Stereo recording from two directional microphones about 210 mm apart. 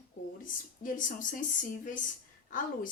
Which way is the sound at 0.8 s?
40° left (ahead or behind).